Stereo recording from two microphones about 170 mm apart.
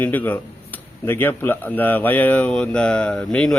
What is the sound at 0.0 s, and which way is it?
Speech, 10° left (ahead or behind).